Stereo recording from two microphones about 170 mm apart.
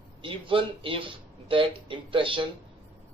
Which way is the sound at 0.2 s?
30° right (ahead or behind).